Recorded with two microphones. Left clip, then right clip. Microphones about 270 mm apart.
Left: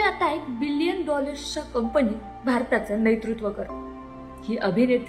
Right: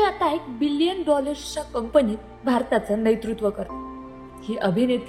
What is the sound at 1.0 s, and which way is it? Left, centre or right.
A woman's voice, right.